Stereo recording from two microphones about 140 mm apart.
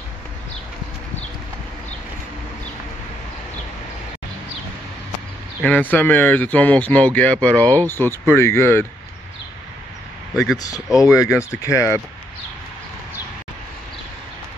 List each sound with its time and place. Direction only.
5.6 s speech: 10° left (ahead or behind)
10.3 s speech: centre (ahead or behind)
11.6 s speech: 20° left (ahead or behind)